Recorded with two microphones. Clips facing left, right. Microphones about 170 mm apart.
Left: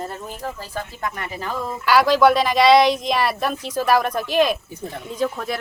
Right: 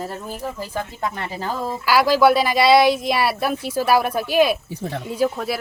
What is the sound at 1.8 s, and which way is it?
Speech, 5° right (ahead or behind).